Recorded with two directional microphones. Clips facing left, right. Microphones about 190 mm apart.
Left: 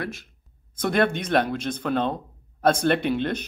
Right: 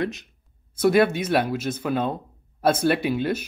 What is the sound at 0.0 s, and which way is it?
Speech, 20° right (ahead or behind).